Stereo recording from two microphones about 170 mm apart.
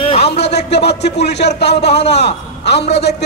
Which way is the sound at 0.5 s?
80° left.